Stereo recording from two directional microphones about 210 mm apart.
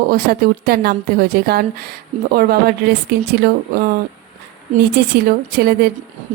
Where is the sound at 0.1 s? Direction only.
45° right (ahead or behind).